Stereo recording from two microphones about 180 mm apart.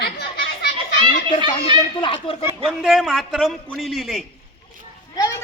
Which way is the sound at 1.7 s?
30° left (ahead or behind).